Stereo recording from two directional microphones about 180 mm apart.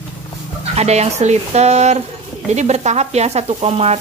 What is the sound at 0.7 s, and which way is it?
Speech, 35° right (ahead or behind).